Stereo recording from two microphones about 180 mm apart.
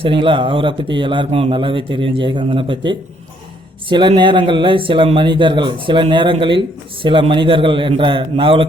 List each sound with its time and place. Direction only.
0.0 s speech: 25° right (ahead or behind)